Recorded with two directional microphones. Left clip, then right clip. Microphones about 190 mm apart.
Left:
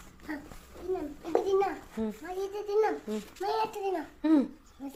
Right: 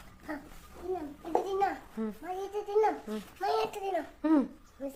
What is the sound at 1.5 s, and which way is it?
A child's voice, centre (ahead or behind).